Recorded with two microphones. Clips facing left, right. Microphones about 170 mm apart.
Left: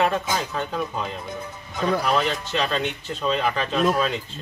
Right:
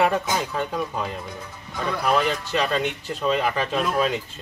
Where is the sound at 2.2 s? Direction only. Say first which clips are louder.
Right 1 dB; 10° right (ahead or behind).